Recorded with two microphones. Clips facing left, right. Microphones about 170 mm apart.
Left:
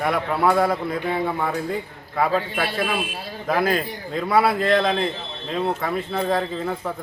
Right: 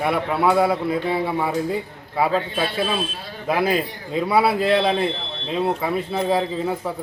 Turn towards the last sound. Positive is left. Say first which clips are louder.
# right 2 dB
turn(degrees=-10)  # may be behind; listen again after turning